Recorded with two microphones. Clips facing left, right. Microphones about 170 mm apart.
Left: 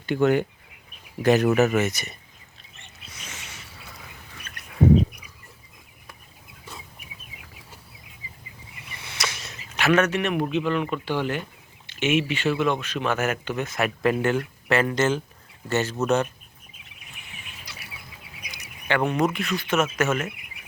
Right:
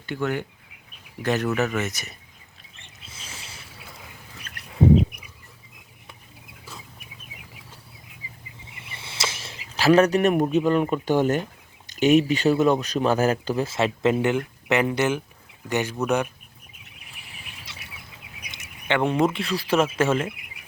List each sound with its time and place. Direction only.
0.0 s speech: 20° left (ahead or behind); by 2.1 s centre (ahead or behind)
3.1 s a sound: 30° right (ahead or behind)
8.8 s a sound: 30° right (ahead or behind)
10.7 s speech: 40° right (ahead or behind); by 16.3 s 15° right (ahead or behind)
17.2 s bird: 35° right (ahead or behind)
18.5 s speech: 20° right (ahead or behind)